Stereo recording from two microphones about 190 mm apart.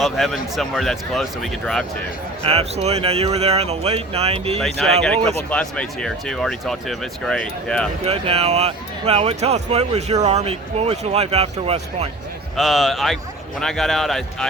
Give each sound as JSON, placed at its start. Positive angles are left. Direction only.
{"t": 0.0, "sound": "speech", "side_deg": 0}
{"t": 2.4, "sound": "speech", "side_deg": -30}
{"t": 4.6, "sound": "speech", "side_deg": 0}
{"t": 8.0, "sound": "speech", "side_deg": -30}
{"t": 12.5, "sound": "speech", "side_deg": 0}